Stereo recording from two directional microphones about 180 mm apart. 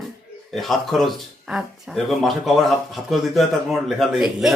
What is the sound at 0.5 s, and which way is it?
Speech, centre (ahead or behind).